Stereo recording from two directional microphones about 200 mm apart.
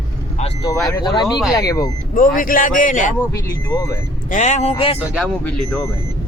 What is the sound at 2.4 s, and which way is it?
Speech, 45° left (ahead or behind).